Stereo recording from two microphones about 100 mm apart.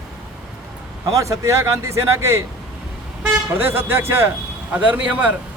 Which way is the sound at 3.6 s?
20° right (ahead or behind).